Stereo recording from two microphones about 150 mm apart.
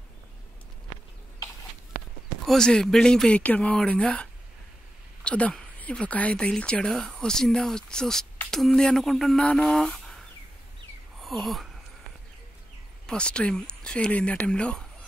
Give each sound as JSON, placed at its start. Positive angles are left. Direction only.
{"t": 2.4, "sound": "speech", "side_deg": 5}
{"t": 13.0, "sound": "speech", "side_deg": 5}